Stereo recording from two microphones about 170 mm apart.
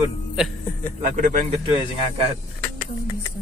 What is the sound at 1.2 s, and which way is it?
Speech, 50° right (ahead or behind).